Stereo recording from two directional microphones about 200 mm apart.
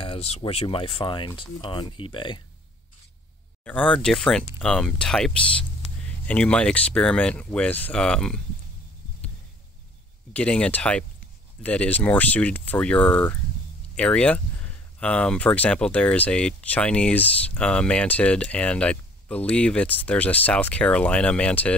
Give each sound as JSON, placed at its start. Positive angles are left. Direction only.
{"t": 0.0, "sound": "speech", "side_deg": 30}
{"t": 3.6, "sound": "speech", "side_deg": 5}
{"t": 10.3, "sound": "speech", "side_deg": 5}